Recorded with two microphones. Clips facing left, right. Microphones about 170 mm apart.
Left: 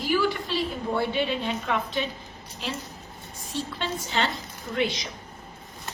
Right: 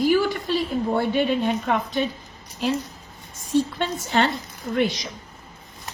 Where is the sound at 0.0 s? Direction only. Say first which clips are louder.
Right 5 dB; 45° right (ahead or behind).